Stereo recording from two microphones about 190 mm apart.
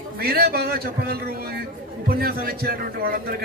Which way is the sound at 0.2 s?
55° right (ahead or behind).